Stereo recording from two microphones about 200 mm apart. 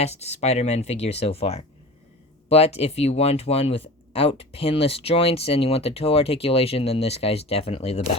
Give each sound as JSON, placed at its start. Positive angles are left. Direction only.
{"t": 0.0, "sound": "speech", "side_deg": 30}